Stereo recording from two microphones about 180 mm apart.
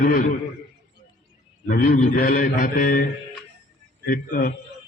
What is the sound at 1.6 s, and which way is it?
Mantra, 55° left (ahead or behind).